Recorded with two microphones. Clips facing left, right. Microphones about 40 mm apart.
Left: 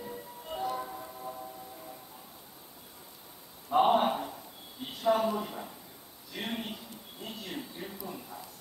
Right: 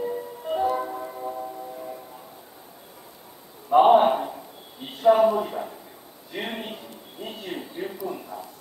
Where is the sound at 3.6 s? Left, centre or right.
Right.